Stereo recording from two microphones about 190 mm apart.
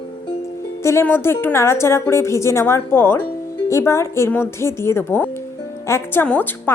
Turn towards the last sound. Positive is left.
turn(degrees=10)  # may be behind; listen again after turning